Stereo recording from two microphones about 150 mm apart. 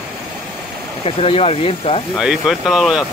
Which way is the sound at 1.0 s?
40° left (ahead or behind).